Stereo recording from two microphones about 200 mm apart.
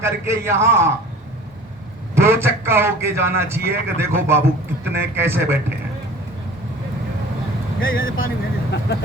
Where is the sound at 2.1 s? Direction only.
15° right (ahead or behind).